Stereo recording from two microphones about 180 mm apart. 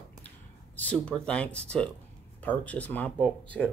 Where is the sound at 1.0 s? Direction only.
5° left (ahead or behind).